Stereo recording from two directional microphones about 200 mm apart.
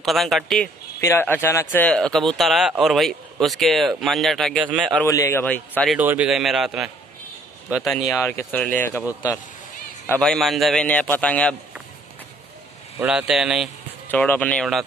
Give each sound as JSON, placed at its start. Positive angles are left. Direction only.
{"t": 0.0, "sound": "speech", "side_deg": 0}
{"t": 1.0, "sound": "speech", "side_deg": 10}
{"t": 5.0, "sound": "a man's voice", "side_deg": 15}
{"t": 5.9, "sound": "speech", "side_deg": -5}
{"t": 8.1, "sound": "a man's voice", "side_deg": 10}
{"t": 10.0, "sound": "speech", "side_deg": 5}
{"t": 13.0, "sound": "a man's voice", "side_deg": -5}